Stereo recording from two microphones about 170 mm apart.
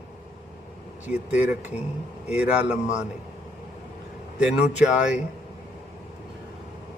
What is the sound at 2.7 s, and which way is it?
Speech, 40° left (ahead or behind).